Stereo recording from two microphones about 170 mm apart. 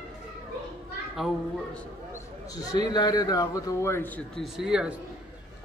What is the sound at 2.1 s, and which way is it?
A man's voice, 20° left (ahead or behind).